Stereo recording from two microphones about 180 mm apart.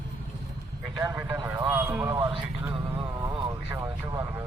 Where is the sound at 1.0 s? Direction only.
5° right (ahead or behind).